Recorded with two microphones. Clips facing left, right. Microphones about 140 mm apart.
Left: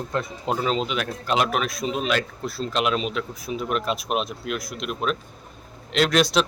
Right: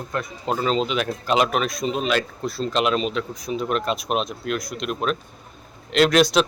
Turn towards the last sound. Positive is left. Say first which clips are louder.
# right 3 dB
turn(degrees=0)  # may be behind; listen again after turning